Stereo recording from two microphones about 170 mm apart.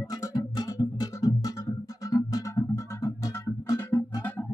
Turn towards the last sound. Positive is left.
turn(degrees=20)  # may be behind; listen again after turning